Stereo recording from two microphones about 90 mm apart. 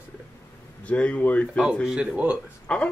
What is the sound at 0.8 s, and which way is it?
Speech, 15° left (ahead or behind).